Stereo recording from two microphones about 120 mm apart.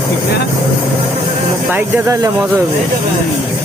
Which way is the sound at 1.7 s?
25° right (ahead or behind).